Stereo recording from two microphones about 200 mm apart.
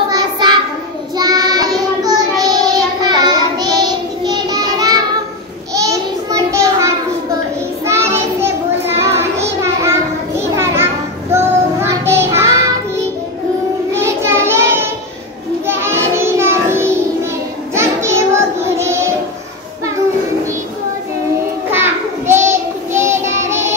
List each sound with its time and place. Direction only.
0.1 s child singing: 20° right (ahead or behind)
5.8 s a sound: 15° right (ahead or behind)
7.8 s child singing: 15° right (ahead or behind)
11.9 s child singing: 15° right (ahead or behind)
13.9 s child singing: 15° right (ahead or behind)
21.7 s child singing: 10° right (ahead or behind)